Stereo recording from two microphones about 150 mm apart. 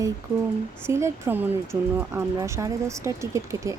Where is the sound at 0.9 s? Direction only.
20° right (ahead or behind).